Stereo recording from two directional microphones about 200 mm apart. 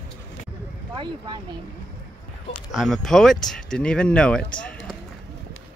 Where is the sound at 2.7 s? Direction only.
Centre (ahead or behind).